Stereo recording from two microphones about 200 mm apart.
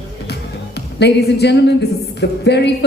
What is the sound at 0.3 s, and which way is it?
Speech, 55° left (ahead or behind).